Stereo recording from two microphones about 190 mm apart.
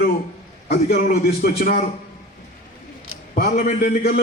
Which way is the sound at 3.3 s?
50° left (ahead or behind).